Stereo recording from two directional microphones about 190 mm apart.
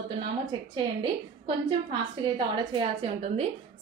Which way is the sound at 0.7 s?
25° right (ahead or behind).